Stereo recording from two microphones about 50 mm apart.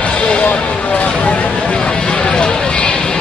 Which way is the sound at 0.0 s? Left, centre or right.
Left.